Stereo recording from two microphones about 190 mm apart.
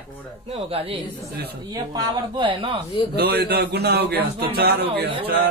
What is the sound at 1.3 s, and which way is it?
Speech, 55° right (ahead or behind).